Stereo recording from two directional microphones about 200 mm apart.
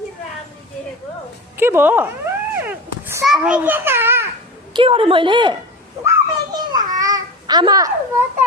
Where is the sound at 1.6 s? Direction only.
10° right (ahead or behind).